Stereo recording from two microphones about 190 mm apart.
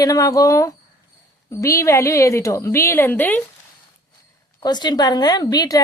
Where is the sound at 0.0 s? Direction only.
20° left (ahead or behind).